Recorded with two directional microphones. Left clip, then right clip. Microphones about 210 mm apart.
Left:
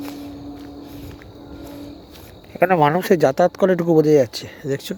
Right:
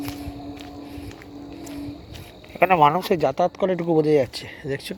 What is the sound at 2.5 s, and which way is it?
Speech, 30° left (ahead or behind).